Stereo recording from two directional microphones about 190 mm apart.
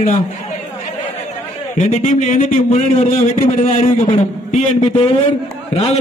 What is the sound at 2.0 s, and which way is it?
Speech, 45° left (ahead or behind).